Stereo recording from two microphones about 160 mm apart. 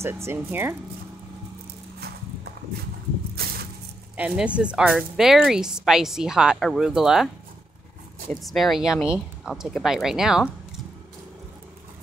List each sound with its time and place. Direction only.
0.0 s speech: 15° right (ahead or behind)
2.0 s horse: 80° right
4.2 s speech: 10° right (ahead or behind)
8.3 s speech: centre (ahead or behind)